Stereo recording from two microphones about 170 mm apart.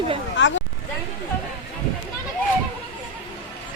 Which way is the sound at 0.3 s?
90° left.